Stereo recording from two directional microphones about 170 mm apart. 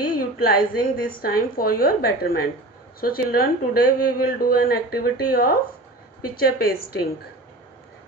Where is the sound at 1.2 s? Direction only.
60° left (ahead or behind).